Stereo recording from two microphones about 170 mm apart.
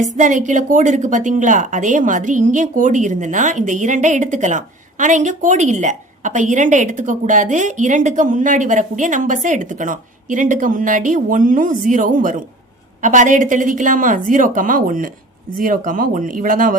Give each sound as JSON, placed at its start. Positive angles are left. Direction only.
{"t": 0.2, "sound": "a woman's voice", "side_deg": -45}